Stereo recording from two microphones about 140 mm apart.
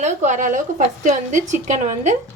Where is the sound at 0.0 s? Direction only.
60° right (ahead or behind).